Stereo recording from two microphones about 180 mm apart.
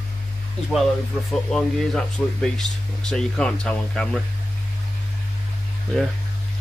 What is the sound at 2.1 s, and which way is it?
Speech, 5° left (ahead or behind).